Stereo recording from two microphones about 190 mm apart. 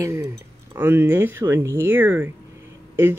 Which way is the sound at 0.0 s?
15° right (ahead or behind).